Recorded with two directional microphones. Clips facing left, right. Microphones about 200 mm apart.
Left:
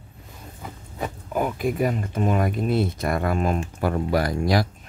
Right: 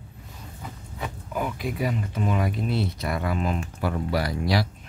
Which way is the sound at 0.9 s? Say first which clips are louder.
Left 5 dB; 45° left (ahead or behind).